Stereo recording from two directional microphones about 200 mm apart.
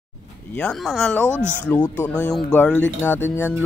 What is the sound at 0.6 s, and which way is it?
Speech, 5° left (ahead or behind).